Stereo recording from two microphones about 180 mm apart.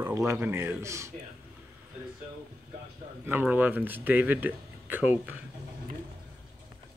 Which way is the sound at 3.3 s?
10° right (ahead or behind).